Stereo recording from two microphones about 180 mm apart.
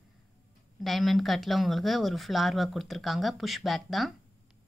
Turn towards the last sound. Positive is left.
turn(degrees=0)  # may be behind; listen again after turning